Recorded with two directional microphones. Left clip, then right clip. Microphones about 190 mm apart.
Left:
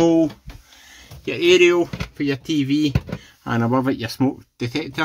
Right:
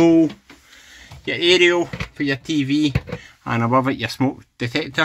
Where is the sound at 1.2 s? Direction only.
15° left (ahead or behind).